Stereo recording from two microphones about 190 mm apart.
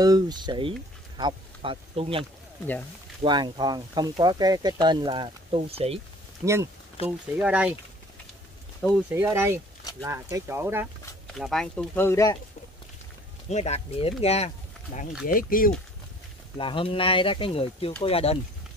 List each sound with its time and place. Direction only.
0.0 s speech: 20° right (ahead or behind)
3.3 s speech: 25° right (ahead or behind)
6.4 s speech: 15° right (ahead or behind)
7.0 s speech: 30° left (ahead or behind)
7.3 s speech: 5° right (ahead or behind)
9.1 s speech: 15° right (ahead or behind)
11.3 s speech: centre (ahead or behind)
13.5 s speech: 35° left (ahead or behind)
15.2 s speech: 50° left (ahead or behind)
16.5 s speech: 25° left (ahead or behind)